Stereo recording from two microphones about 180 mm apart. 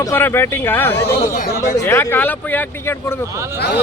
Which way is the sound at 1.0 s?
60° left (ahead or behind).